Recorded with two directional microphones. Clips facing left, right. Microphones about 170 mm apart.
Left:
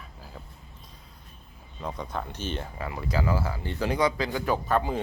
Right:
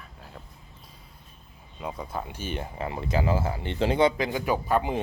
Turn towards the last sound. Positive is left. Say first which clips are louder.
# right 1 dB
turn(degrees=-15)  # may be behind; listen again after turning